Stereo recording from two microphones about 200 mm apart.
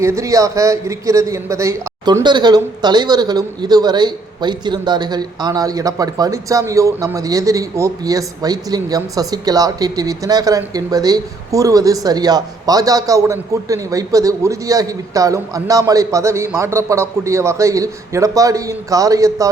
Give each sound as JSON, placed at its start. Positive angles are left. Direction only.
{"t": 0.0, "sound": "a man's voice", "side_deg": -15}